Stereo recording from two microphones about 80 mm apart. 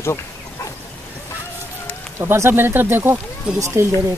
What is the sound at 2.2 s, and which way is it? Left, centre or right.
Speech, right.